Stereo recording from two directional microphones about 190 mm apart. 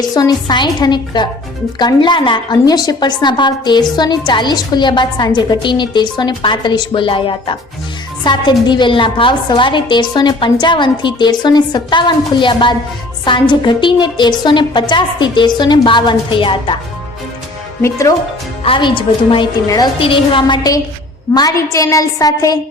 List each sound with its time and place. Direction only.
0.0 s a woman's voice: 20° left (ahead or behind)
17.8 s a woman's voice: 15° left (ahead or behind)
18.6 s a woman's voice: 25° left (ahead or behind)